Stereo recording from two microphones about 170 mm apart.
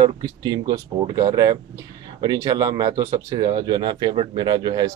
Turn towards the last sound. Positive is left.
turn(degrees=-25)  # may be behind; listen again after turning